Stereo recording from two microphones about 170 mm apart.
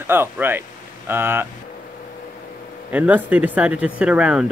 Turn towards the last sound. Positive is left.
turn(degrees=-5)  # may be behind; listen again after turning